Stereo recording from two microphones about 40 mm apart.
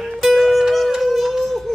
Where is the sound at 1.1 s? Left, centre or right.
Centre.